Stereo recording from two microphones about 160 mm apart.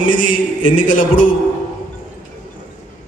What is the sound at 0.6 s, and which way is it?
Speech, 55° left (ahead or behind).